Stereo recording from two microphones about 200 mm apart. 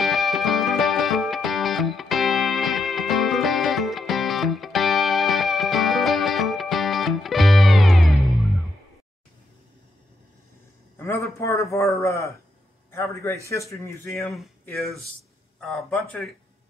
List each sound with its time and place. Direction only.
0.0 s music: centre (ahead or behind)
11.0 s a sound: 15° left (ahead or behind)
13.5 s speech: 15° left (ahead or behind)
15.6 s speech: 5° left (ahead or behind)